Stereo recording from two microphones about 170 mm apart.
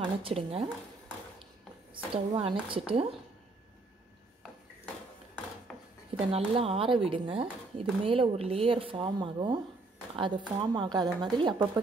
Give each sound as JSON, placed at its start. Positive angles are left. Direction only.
{"t": 0.0, "sound": "a woman's voice", "side_deg": -35}
{"t": 2.1, "sound": "a woman's voice", "side_deg": -35}
{"t": 5.7, "sound": "dishes", "side_deg": 5}
{"t": 6.3, "sound": "a woman's voice", "side_deg": -35}